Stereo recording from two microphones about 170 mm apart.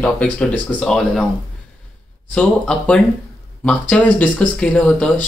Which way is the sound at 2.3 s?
5° left (ahead or behind).